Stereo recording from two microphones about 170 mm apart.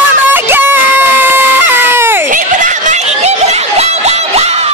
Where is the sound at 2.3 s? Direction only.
50° right (ahead or behind).